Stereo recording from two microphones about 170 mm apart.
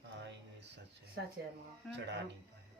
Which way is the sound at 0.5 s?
90° right.